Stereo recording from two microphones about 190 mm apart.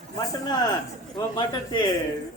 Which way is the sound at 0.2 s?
20° left (ahead or behind).